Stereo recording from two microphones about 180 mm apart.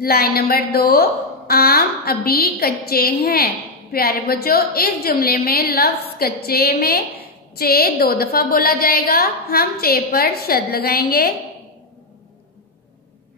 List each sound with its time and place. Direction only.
0.0 s a woman's voice: 55° left (ahead or behind)